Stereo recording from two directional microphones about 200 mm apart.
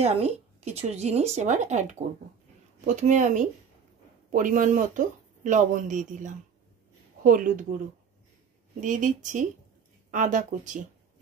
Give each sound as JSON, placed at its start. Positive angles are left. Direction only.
{"t": 0.0, "sound": "speech", "side_deg": -30}
{"t": 8.8, "sound": "speech", "side_deg": -40}